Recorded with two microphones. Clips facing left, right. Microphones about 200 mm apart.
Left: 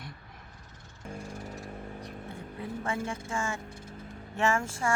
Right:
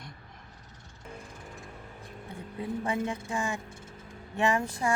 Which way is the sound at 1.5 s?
40° left (ahead or behind).